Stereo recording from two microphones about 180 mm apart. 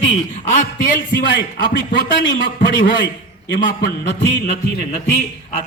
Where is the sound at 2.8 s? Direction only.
80° left.